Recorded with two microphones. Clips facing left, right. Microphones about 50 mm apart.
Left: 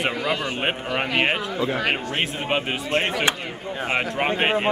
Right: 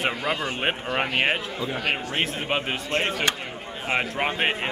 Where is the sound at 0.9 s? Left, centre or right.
Centre.